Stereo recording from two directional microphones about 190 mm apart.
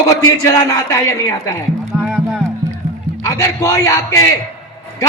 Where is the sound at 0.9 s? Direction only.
15° left (ahead or behind).